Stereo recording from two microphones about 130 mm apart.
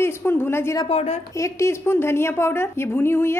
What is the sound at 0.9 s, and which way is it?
Speech, 50° left (ahead or behind).